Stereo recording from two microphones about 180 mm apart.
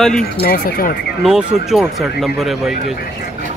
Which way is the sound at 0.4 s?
55° left (ahead or behind).